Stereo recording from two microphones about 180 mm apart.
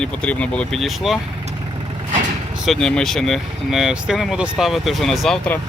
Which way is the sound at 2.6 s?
5° left (ahead or behind).